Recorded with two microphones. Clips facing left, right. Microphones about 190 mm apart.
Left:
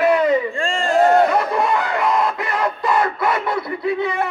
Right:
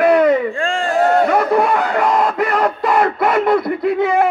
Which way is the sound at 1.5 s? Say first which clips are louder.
Right 4 dB; 55° right (ahead or behind).